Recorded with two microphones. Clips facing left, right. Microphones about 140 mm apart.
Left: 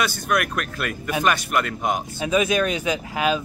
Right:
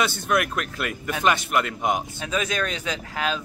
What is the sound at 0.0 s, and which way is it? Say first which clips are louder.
Speech: even; 25° right (ahead or behind).